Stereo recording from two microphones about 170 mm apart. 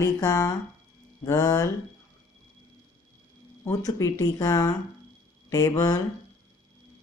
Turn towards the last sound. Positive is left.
turn(degrees=20)  # may be behind; listen again after turning